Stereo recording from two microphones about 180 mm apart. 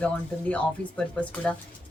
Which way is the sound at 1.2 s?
5° left (ahead or behind).